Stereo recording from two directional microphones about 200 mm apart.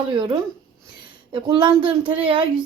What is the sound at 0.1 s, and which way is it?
Speech, 25° right (ahead or behind).